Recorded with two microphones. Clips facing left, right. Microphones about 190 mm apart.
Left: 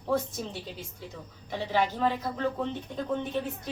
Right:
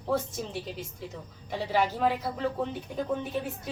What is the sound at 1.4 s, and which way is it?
Speech, 10° right (ahead or behind).